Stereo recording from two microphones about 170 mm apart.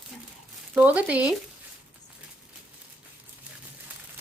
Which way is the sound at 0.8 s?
10° right (ahead or behind).